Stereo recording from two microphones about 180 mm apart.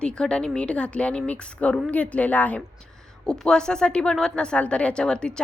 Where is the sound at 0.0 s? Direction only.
5° left (ahead or behind).